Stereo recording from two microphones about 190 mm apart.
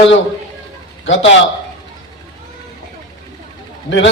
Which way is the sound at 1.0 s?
80° left.